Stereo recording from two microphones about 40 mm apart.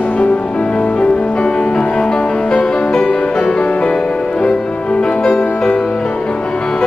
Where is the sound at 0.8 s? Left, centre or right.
Left.